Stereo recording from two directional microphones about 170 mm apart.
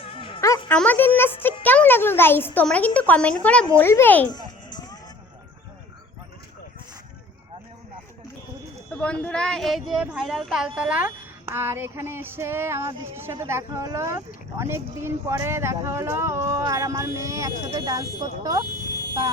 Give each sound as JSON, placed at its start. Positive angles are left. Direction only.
{"t": 0.0, "sound": "music", "side_deg": 30}
{"t": 0.4, "sound": "music", "side_deg": 20}
{"t": 0.7, "sound": "a child's voice", "side_deg": 10}
{"t": 4.3, "sound": "music", "side_deg": 25}
{"t": 8.9, "sound": "a sound", "side_deg": 5}
{"t": 9.2, "sound": "speech", "side_deg": 5}